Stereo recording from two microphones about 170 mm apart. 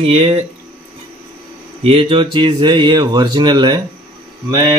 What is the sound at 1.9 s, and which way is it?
Speech, 30° right (ahead or behind).